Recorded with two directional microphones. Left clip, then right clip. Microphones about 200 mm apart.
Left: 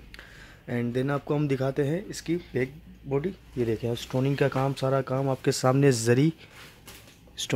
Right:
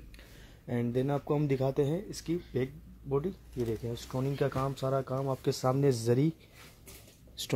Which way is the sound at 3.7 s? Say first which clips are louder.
Left 7 dB; 25° left (ahead or behind).